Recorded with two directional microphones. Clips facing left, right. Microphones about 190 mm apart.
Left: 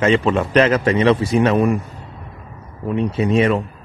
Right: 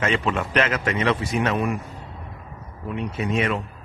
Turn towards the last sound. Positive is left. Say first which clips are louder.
# left 8 dB
turn(degrees=30)  # may be behind; listen again after turning